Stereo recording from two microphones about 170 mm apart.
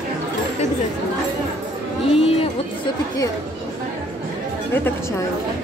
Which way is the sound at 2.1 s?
35° left (ahead or behind).